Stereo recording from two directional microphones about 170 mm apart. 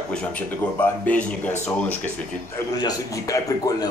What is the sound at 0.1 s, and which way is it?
Speech, 5° left (ahead or behind).